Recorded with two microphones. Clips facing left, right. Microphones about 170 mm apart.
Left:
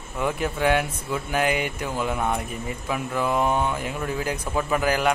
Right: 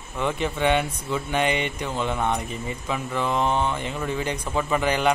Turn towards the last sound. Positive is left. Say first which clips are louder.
# even
turn(degrees=5)  # may be behind; listen again after turning